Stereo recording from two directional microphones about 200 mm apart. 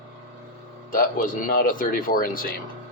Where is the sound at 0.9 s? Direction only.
45° left (ahead or behind).